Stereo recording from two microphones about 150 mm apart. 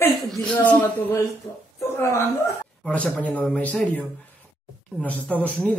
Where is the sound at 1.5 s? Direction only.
25° left (ahead or behind).